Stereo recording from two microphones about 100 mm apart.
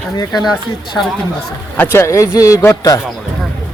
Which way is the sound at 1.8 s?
25° left (ahead or behind).